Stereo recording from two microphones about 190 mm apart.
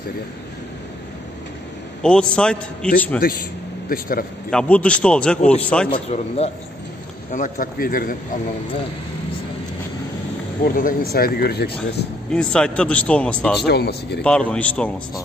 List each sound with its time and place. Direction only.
2.0 s a man's voice: 5° left (ahead or behind)
3.9 s speech: 50° left (ahead or behind)
4.5 s a man's voice: 5° left (ahead or behind)
5.9 s a man's voice: 30° left (ahead or behind)
7.3 s speech: 45° left (ahead or behind)
10.7 s speech: 45° left (ahead or behind)
12.3 s speech: 5° left (ahead or behind)
13.6 s speech: 60° left (ahead or behind)
14.2 s a man's voice: 5° left (ahead or behind)